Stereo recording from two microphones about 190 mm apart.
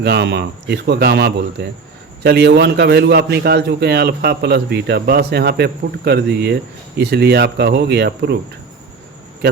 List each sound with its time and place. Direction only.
0.0 s a man's voice: 60° right (ahead or behind)